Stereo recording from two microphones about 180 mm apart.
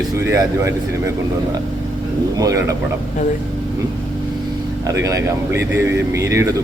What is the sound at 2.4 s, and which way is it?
Speech, 15° right (ahead or behind).